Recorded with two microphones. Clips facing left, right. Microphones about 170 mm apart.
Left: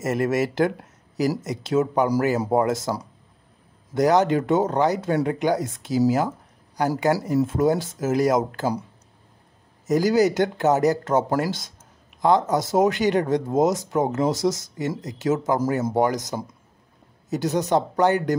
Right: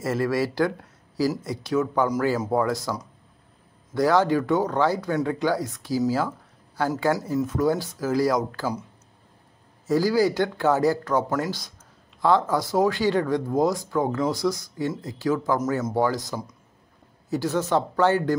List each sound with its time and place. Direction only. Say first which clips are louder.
0.0 s speech: left 2 dB; 20° left (ahead or behind)
7.3 s speech: left 3 dB; 25° left (ahead or behind)
9.8 s speech: left 2 dB; 20° left (ahead or behind)